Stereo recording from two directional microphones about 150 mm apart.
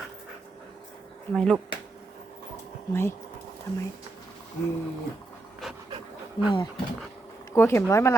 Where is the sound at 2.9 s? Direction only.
15° left (ahead or behind).